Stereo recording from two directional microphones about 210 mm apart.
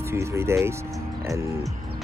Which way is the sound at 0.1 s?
15° right (ahead or behind).